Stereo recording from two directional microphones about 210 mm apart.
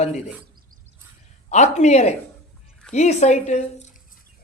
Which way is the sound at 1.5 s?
35° left (ahead or behind).